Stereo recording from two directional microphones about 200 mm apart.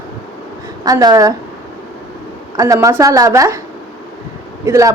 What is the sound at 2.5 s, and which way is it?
A woman's voice, 15° right (ahead or behind).